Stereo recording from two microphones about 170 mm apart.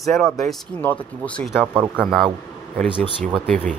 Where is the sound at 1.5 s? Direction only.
5° right (ahead or behind).